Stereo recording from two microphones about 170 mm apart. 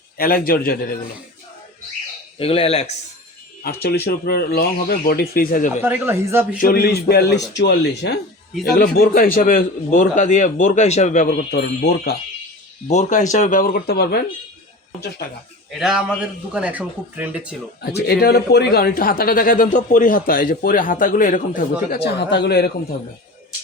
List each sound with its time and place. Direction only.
0.2 s speech: 60° left (ahead or behind)
2.4 s speech: 35° left (ahead or behind)
3.6 s speech: 70° left (ahead or behind); by 5.8 s 50° left (ahead or behind)
5.8 s a man's voice: 15° right (ahead or behind)
6.6 s a man's voice: 60° left (ahead or behind)
8.6 s a man's voice: 60° left (ahead or behind)
11.5 s a man's voice: 70° left (ahead or behind)
12.9 s a man's voice: 45° left (ahead or behind); by 14.2 s 70° left (ahead or behind)
15.8 s a man's voice: 5° right (ahead or behind)
17.9 s speech: 65° left (ahead or behind)